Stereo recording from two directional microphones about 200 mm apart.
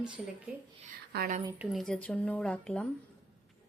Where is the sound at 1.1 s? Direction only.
45° right (ahead or behind).